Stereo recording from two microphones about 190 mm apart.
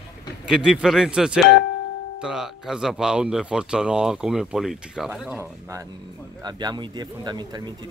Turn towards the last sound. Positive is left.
turn(degrees=-20)  # may be behind; listen again after turning